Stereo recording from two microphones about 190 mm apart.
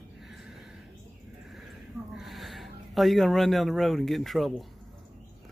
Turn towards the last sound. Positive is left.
turn(degrees=0)  # may be behind; listen again after turning